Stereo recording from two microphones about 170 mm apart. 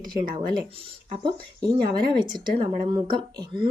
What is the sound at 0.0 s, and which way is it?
Speech, 25° right (ahead or behind).